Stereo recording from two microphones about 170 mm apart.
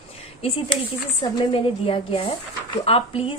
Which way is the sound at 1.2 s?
30° left (ahead or behind).